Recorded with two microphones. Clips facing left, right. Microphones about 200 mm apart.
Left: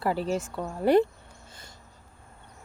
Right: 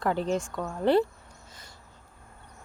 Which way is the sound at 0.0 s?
5° left (ahead or behind).